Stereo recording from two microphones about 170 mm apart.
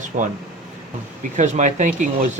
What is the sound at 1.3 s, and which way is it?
Speech, 45° right (ahead or behind).